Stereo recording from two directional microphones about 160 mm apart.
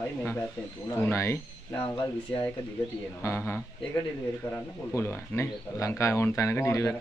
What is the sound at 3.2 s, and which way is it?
Speech, 15° left (ahead or behind).